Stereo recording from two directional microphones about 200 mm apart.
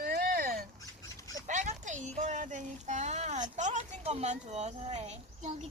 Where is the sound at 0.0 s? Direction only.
50° right (ahead or behind).